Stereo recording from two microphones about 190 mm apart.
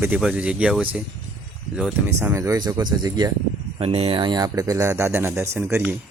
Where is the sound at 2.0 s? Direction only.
15° right (ahead or behind).